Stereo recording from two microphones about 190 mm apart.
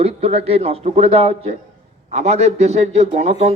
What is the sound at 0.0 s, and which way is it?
A man's voice, 35° right (ahead or behind).